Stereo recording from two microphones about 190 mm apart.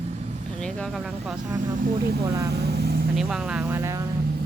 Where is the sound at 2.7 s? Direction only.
55° right (ahead or behind).